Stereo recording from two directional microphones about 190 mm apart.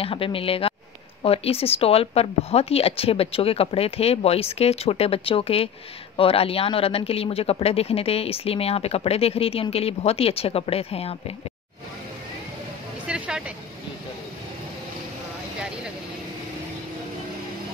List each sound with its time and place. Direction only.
0.0 s speech: 30° left (ahead or behind)
13.0 s vehicle: 5° right (ahead or behind)